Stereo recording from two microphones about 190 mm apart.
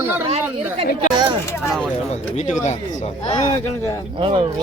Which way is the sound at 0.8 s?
25° right (ahead or behind).